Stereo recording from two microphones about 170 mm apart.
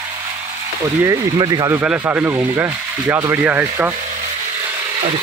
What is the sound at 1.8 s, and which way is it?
Speech, 10° right (ahead or behind).